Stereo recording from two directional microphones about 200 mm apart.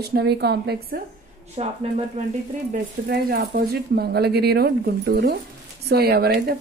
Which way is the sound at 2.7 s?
50° right (ahead or behind).